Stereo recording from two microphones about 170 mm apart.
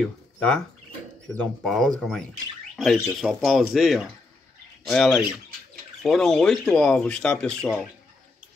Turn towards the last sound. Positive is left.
turn(degrees=5)  # may be behind; listen again after turning